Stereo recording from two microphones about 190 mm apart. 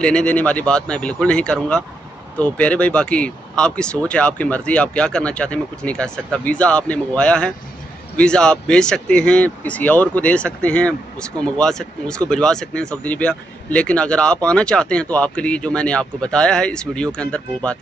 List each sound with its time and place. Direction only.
0.0 s speech: 5° left (ahead or behind)